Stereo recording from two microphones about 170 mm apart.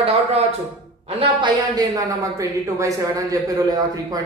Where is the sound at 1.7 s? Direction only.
20° right (ahead or behind).